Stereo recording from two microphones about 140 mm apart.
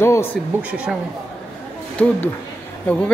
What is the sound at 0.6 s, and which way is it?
Speech, 10° right (ahead or behind).